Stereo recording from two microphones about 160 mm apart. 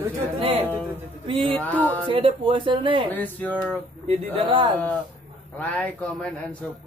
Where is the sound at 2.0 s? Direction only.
30° right (ahead or behind).